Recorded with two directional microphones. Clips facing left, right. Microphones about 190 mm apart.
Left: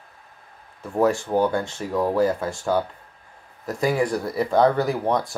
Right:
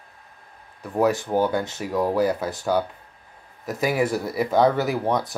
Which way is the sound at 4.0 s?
5° right (ahead or behind).